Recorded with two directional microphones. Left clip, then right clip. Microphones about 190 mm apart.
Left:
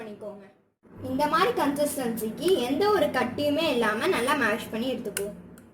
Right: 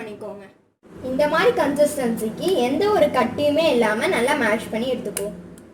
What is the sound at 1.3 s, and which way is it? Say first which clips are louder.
A woman's voice: right 6 dB; 35° left (ahead or behind).